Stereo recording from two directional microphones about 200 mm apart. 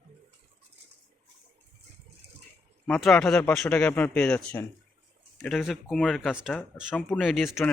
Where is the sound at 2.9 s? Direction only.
Centre (ahead or behind).